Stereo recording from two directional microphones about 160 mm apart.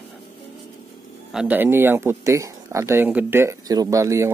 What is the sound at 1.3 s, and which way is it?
Speech, 5° right (ahead or behind).